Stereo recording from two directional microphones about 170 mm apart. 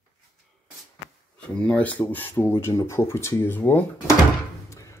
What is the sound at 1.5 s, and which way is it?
Speech, 10° left (ahead or behind).